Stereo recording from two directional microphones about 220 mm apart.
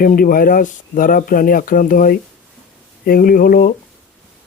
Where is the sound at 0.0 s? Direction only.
40° left (ahead or behind).